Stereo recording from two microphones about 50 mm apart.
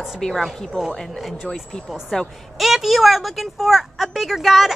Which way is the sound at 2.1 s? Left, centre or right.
Centre.